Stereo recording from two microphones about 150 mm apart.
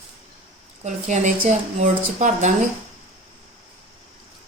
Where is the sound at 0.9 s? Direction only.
50° right (ahead or behind).